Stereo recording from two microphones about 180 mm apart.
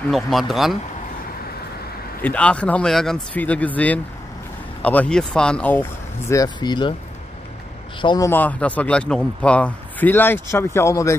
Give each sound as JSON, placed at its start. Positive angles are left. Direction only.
{"t": 0.1, "sound": "speech", "side_deg": 0}
{"t": 2.2, "sound": "a man's voice", "side_deg": 5}
{"t": 8.0, "sound": "a man's voice", "side_deg": 25}
{"t": 8.3, "sound": "a man's voice", "side_deg": 10}